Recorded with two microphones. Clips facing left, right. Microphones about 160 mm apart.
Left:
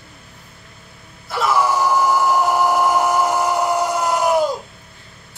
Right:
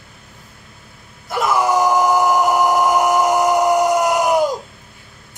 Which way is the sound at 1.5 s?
20° right (ahead or behind).